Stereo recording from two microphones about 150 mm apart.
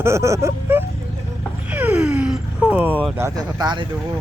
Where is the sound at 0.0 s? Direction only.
20° right (ahead or behind).